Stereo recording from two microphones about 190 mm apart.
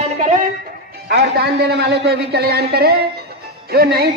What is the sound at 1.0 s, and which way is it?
A man's voice, 55° right (ahead or behind).